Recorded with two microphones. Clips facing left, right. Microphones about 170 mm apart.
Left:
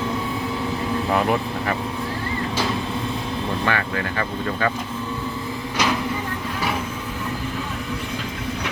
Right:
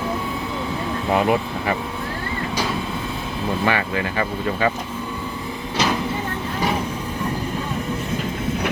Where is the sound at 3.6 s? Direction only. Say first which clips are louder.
Right 4 dB; 15° right (ahead or behind).